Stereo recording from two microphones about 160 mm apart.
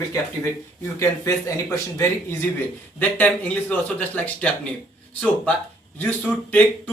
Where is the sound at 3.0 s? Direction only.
10° left (ahead or behind).